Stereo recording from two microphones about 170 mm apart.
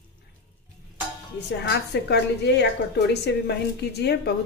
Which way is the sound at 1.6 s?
80° left.